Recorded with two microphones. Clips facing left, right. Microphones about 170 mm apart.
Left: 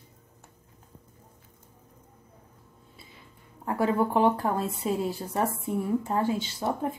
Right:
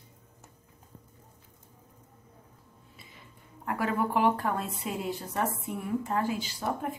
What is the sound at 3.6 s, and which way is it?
A woman's voice, 30° left (ahead or behind).